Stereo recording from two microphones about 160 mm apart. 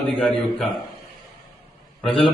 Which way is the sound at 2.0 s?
5° left (ahead or behind).